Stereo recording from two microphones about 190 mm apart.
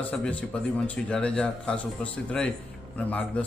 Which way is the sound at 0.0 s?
5° left (ahead or behind).